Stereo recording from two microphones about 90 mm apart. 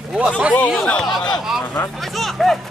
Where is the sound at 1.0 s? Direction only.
50° left (ahead or behind).